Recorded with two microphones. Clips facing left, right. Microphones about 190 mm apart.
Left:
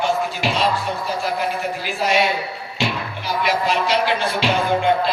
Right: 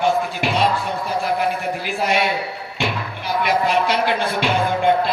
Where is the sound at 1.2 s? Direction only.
55° right (ahead or behind).